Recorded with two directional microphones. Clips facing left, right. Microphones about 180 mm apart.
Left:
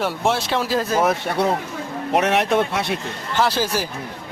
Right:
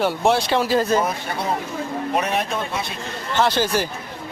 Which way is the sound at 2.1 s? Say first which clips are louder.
Left 7 dB; 75° left (ahead or behind).